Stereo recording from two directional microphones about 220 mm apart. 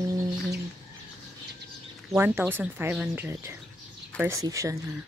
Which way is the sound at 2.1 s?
10° right (ahead or behind).